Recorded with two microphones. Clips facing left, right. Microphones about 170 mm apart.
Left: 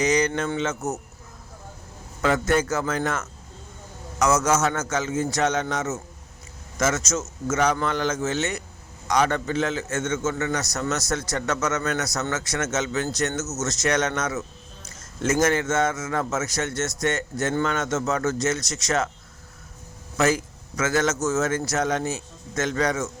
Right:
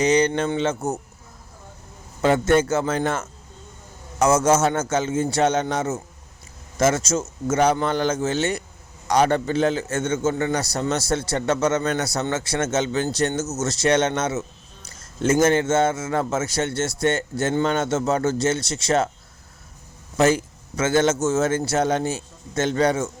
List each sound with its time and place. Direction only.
0.0 s a man's voice: 30° right (ahead or behind)
2.2 s a man's voice: 25° right (ahead or behind)
20.1 s a man's voice: 30° right (ahead or behind)